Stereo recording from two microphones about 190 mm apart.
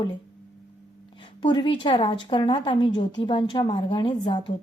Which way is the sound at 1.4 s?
25° left (ahead or behind).